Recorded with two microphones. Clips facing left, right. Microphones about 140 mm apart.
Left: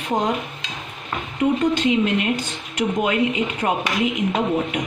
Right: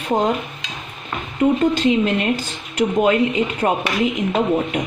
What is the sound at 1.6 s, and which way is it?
Speech, 35° right (ahead or behind).